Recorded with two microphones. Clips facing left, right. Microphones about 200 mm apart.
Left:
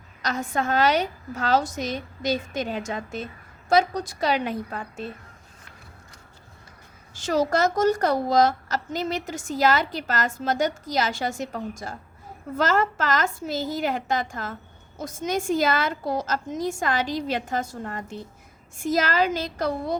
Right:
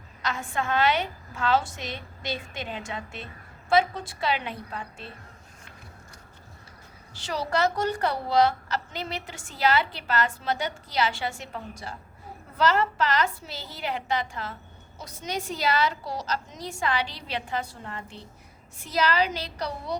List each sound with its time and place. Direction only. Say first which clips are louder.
0.2 s a woman's voice: left 4 dB; 40° left (ahead or behind)
7.1 s a woman's voice: left 6 dB; 45° left (ahead or behind)